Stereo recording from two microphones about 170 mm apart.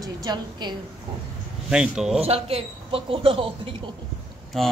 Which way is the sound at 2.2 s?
35° right (ahead or behind).